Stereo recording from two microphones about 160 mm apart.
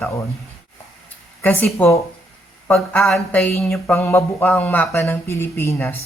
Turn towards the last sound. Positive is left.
turn(degrees=15)  # may be behind; listen again after turning